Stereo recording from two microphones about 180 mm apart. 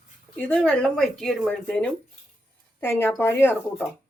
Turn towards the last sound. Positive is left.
turn(degrees=10)  # may be behind; listen again after turning